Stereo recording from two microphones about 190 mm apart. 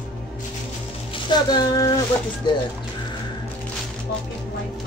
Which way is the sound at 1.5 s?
20° left (ahead or behind).